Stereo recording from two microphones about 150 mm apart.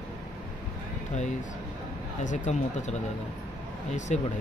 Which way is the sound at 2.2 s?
55° left (ahead or behind).